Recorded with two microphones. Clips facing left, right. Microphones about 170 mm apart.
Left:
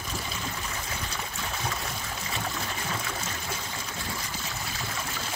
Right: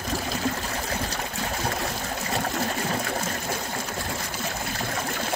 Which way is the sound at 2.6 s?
50° right (ahead or behind).